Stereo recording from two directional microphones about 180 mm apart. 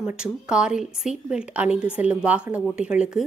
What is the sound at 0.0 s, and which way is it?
A woman's voice, 5° right (ahead or behind).